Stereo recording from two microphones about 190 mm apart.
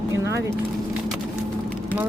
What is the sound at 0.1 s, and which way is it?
Vehicle, 15° right (ahead or behind).